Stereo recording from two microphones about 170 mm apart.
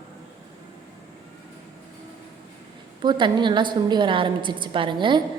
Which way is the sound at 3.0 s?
25° right (ahead or behind).